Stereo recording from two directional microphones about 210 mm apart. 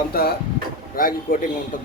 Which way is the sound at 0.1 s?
50° left (ahead or behind).